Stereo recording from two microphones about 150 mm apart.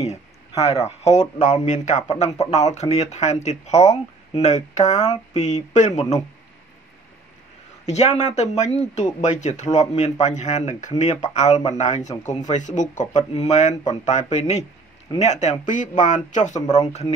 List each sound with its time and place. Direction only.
0.0 s speech: 45° left (ahead or behind)
7.8 s speech: 50° left (ahead or behind)